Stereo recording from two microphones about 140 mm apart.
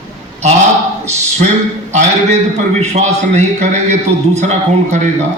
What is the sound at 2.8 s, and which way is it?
A man's voice, 55° right (ahead or behind).